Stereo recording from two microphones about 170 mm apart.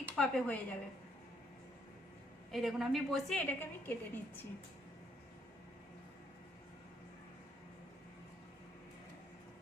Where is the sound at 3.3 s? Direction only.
10° left (ahead or behind).